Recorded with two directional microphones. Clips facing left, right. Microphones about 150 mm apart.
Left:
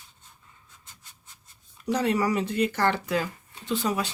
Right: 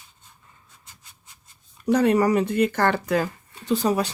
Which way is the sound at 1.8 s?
50° right (ahead or behind).